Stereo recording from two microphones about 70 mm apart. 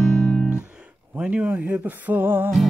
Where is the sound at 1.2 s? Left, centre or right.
Right.